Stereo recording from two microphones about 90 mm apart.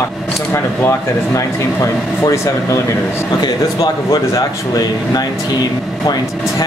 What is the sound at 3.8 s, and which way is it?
Speech, 40° left (ahead or behind).